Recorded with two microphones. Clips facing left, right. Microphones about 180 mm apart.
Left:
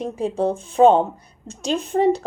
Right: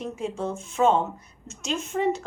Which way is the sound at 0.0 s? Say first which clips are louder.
Left 8 dB; 35° left (ahead or behind).